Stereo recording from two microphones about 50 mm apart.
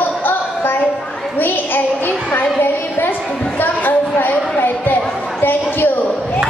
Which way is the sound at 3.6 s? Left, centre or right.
Left.